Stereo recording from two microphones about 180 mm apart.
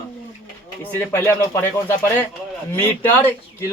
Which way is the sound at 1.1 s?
15° left (ahead or behind).